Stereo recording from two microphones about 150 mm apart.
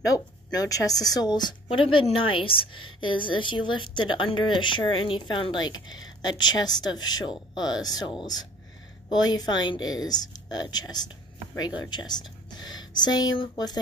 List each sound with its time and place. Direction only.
0.0 s a woman's voice: 25° left (ahead or behind)